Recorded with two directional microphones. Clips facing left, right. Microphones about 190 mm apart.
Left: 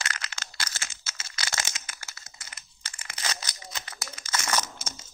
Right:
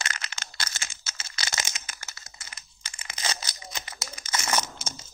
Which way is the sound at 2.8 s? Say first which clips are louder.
Right 2 dB; 20° right (ahead or behind).